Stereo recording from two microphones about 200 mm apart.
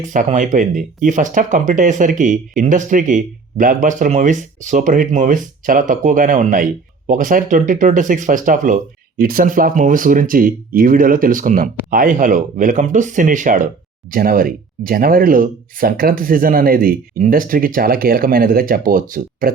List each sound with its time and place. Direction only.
0.0 s speech: 40° right (ahead or behind)